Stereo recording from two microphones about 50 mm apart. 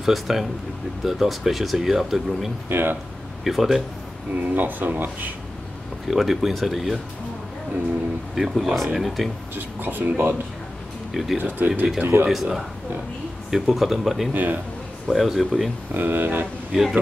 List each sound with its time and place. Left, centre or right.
0.0 s speech: centre
2.7 s speech: right
3.4 s speech: centre
4.4 s speech: right
6.0 s speech: centre
8.4 s speech: centre
9.6 s speech: right
11.3 s speech: right
12.0 s speech: right
13.5 s speech: centre
14.3 s speech: right
15.0 s speech: centre
15.9 s speech: right
16.7 s speech: centre